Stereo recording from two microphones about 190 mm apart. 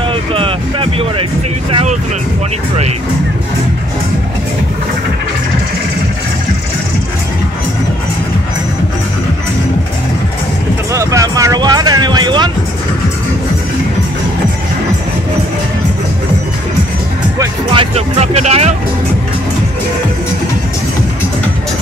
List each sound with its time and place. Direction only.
0.1 s music: 30° right (ahead or behind)
10.9 s music: 15° right (ahead or behind)
17.4 s music: 25° right (ahead or behind)